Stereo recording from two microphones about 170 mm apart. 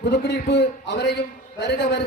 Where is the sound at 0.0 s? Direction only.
80° left.